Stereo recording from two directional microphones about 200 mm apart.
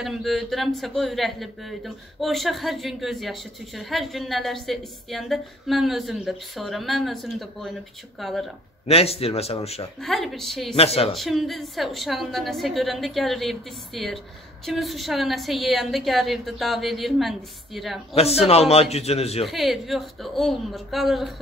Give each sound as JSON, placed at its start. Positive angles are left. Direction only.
{"t": 0.0, "sound": "a man's voice", "side_deg": 0}
{"t": 8.8, "sound": "speech", "side_deg": 30}
{"t": 10.0, "sound": "a man's voice", "side_deg": 0}
{"t": 10.7, "sound": "speech", "side_deg": 30}
{"t": 11.1, "sound": "a man's voice", "side_deg": 0}
{"t": 18.1, "sound": "a man's voice", "side_deg": 30}
{"t": 19.4, "sound": "a man's voice", "side_deg": 0}